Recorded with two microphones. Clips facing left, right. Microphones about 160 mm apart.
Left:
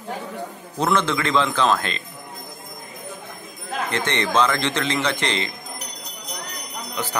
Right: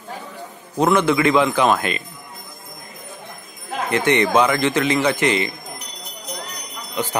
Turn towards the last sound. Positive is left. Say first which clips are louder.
# right 4 dB
turn(degrees=-15)  # may be behind; listen again after turning